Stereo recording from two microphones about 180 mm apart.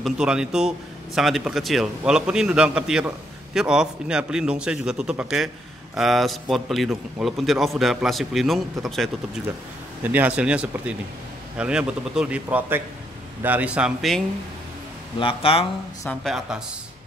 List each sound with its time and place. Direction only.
0.0 s a man's voice: 5° right (ahead or behind)
15.1 s speech: 30° left (ahead or behind)
16.3 s a man's voice: 5° right (ahead or behind)